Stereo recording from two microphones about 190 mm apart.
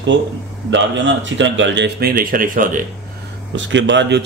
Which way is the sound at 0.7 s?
75° right (ahead or behind).